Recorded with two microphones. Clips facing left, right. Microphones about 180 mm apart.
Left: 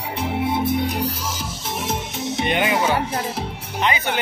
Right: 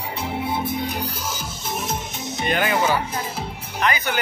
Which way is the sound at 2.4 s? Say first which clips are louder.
Even; 20° left (ahead or behind).